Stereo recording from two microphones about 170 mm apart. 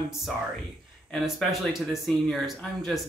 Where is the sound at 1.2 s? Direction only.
Centre (ahead or behind).